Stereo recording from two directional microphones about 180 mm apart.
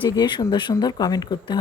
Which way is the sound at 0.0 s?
25° left (ahead or behind).